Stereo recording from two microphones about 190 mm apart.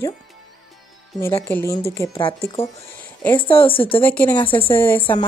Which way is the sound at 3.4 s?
30° left (ahead or behind).